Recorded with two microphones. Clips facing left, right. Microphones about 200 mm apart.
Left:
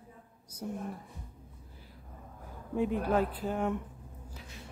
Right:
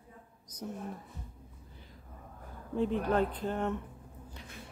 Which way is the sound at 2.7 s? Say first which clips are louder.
Left 1 dB; 10° left (ahead or behind).